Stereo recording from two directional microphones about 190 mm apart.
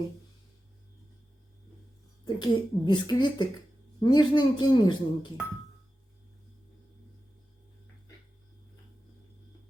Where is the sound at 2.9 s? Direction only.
25° left (ahead or behind).